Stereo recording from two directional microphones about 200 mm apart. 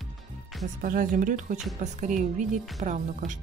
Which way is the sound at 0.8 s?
45° right (ahead or behind).